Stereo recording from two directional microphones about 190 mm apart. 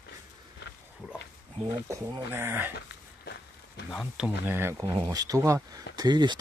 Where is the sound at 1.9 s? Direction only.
15° right (ahead or behind).